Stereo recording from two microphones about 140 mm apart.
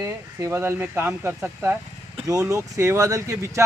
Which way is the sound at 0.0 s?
20° right (ahead or behind).